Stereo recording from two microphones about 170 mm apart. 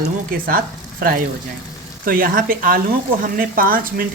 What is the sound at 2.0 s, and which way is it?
Speech, 60° right (ahead or behind).